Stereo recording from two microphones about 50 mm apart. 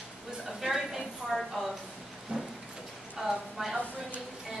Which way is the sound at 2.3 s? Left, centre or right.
Right.